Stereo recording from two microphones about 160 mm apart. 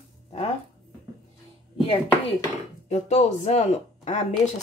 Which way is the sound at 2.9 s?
45° left (ahead or behind).